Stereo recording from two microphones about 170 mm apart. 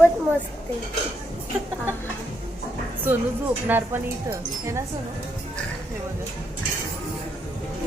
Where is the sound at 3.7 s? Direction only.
10° right (ahead or behind).